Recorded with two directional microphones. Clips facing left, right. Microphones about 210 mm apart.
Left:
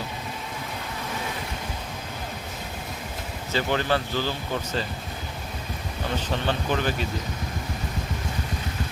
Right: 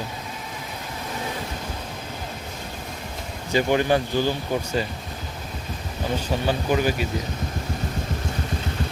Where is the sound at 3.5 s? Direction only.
15° right (ahead or behind).